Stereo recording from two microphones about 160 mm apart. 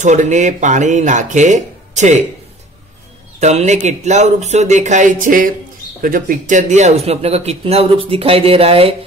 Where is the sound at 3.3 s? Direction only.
45° right (ahead or behind).